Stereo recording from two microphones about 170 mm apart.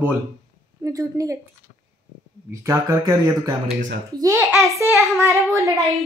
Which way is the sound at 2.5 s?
20° right (ahead or behind).